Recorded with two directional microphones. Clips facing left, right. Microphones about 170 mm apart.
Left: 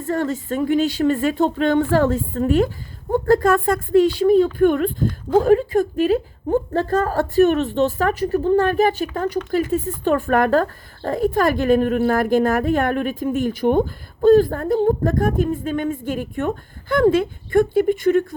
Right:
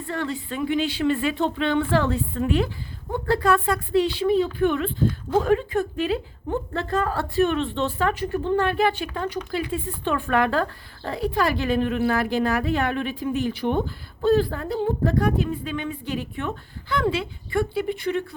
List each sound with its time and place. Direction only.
0.0 s a woman's voice: 45° left (ahead or behind)